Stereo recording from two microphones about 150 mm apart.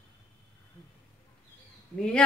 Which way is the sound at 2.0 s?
5° left (ahead or behind).